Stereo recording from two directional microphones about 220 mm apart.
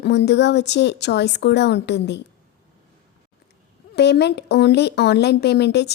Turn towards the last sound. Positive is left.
turn(degrees=50)  # may be behind; listen again after turning